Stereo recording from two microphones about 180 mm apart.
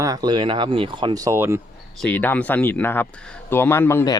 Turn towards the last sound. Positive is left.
turn(degrees=15)  # may be behind; listen again after turning